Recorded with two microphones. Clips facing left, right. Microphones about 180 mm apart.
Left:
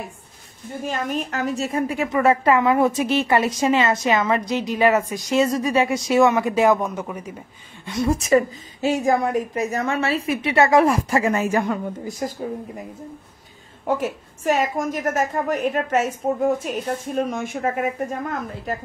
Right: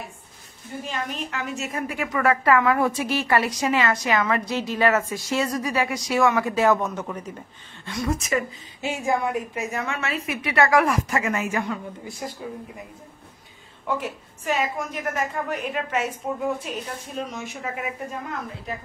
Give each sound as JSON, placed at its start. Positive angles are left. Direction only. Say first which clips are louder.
{"t": 0.8, "sound": "a woman's voice", "louder": "left 6 dB", "side_deg": 45}
{"t": 7.8, "sound": "a woman's voice", "louder": "left 5 dB", "side_deg": 25}
{"t": 13.8, "sound": "a woman's voice", "louder": "left 5 dB", "side_deg": 45}